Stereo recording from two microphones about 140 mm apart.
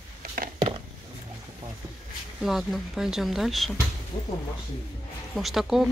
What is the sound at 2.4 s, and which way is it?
Speech, centre (ahead or behind).